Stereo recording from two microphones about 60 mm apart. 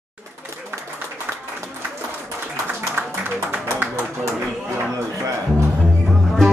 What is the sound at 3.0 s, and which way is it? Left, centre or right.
Music, right.